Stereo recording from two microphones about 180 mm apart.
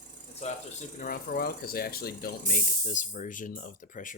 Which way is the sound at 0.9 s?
50° left (ahead or behind).